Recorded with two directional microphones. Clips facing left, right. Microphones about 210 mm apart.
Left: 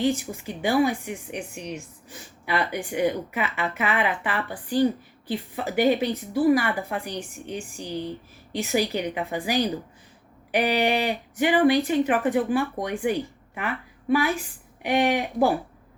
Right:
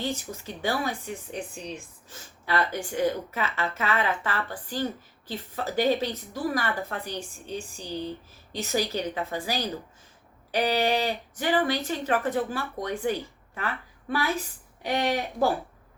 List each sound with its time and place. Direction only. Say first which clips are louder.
0.0 s a woman's voice: left 7 dB; 15° left (ahead or behind)